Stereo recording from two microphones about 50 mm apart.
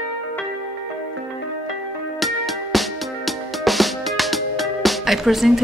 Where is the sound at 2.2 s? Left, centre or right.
Centre.